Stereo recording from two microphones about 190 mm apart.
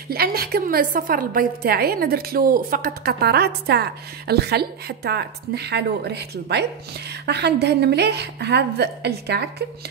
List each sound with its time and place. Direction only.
0.1 s a woman's voice: 55° right (ahead or behind)